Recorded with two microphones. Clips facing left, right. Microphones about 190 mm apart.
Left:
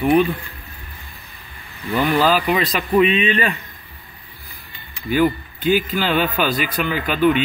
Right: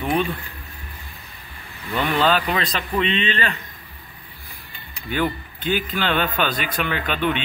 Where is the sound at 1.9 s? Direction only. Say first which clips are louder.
Left 3 dB; 5° left (ahead or behind).